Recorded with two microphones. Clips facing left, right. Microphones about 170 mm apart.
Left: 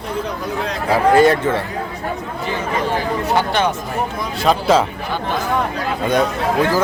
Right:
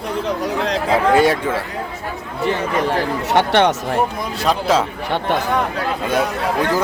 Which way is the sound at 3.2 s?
70° right (ahead or behind).